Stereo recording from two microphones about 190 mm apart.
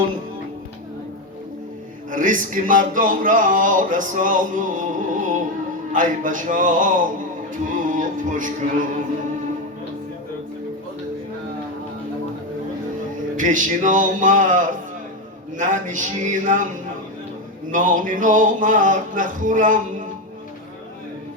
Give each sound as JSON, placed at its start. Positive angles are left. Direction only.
{"t": 2.0, "sound": "music", "side_deg": -45}
{"t": 13.3, "sound": "music", "side_deg": -45}
{"t": 17.7, "sound": "music", "side_deg": -45}